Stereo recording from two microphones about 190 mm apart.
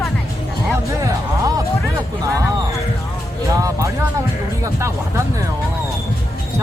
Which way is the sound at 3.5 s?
15° right (ahead or behind).